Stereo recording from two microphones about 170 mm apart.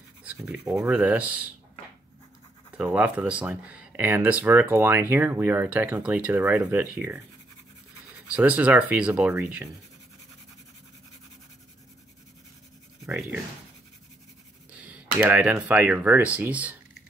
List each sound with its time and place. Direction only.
0.4 s speech: 20° right (ahead or behind)
0.8 s speech: 10° right (ahead or behind)
2.8 s speech: 5° right (ahead or behind)
8.4 s speech: 10° right (ahead or behind)
14.8 s speech: 10° right (ahead or behind)